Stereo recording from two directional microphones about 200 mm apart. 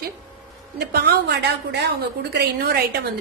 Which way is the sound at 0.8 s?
50° right (ahead or behind).